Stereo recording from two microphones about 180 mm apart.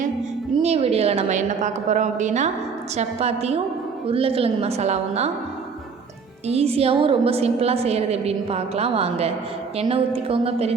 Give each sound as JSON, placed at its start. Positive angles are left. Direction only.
{"t": 0.6, "sound": "a woman's voice", "side_deg": -35}
{"t": 6.5, "sound": "a woman's voice", "side_deg": -35}